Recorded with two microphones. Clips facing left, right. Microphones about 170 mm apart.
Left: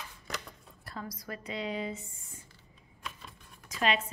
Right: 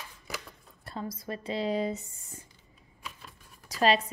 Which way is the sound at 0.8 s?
25° right (ahead or behind).